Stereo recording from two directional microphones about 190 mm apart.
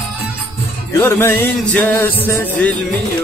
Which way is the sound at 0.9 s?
10° left (ahead or behind).